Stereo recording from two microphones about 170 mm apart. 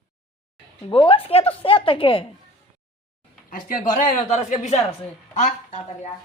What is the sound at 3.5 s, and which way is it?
Speech, 50° left (ahead or behind).